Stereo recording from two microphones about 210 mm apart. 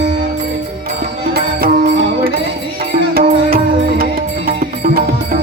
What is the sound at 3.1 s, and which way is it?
Music, 45° right (ahead or behind).